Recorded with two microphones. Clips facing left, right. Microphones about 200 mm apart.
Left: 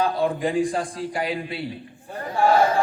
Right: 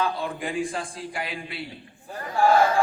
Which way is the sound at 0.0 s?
35° left (ahead or behind).